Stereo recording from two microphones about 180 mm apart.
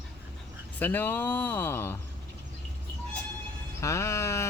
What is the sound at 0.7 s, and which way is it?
Speech, 10° left (ahead or behind).